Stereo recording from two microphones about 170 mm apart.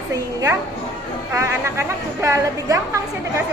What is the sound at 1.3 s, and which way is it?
A woman's voice, 15° right (ahead or behind).